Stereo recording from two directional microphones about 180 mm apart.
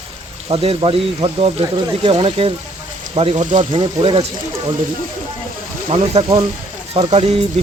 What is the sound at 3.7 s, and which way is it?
Speech, 30° right (ahead or behind).